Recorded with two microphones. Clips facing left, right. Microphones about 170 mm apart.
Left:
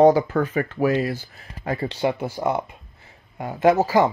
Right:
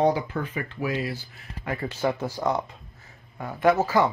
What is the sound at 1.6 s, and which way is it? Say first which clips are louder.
Speech: left 4 dB; 35° left (ahead or behind).